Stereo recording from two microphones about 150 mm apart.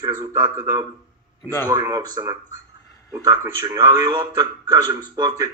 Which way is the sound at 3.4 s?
25° right (ahead or behind).